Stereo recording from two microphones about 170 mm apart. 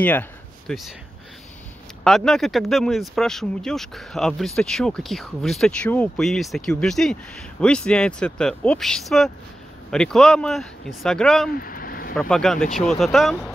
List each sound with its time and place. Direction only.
0.0 s speech: 10° left (ahead or behind)
2.0 s speech: 5° left (ahead or behind)
11.5 s vehicle: 55° left (ahead or behind)
12.2 s speech: centre (ahead or behind)